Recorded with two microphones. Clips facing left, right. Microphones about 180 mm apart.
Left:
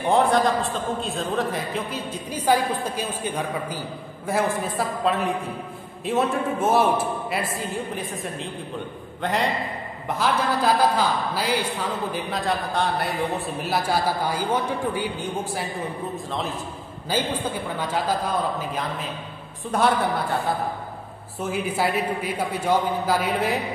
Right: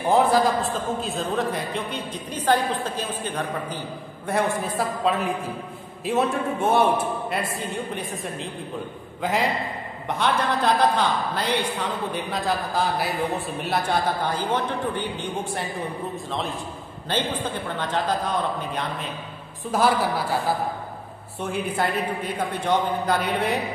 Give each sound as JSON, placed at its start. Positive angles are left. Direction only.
{"t": 0.0, "sound": "a man's voice", "side_deg": -5}